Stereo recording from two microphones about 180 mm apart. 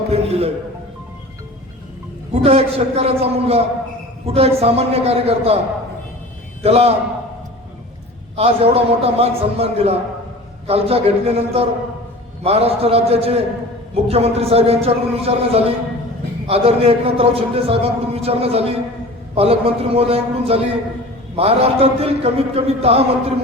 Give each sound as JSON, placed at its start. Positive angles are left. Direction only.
{"t": 0.1, "sound": "music", "side_deg": -35}
{"t": 2.3, "sound": "a man's voice", "side_deg": -35}
{"t": 6.6, "sound": "a man's voice", "side_deg": -35}
{"t": 8.4, "sound": "a man's voice", "side_deg": -35}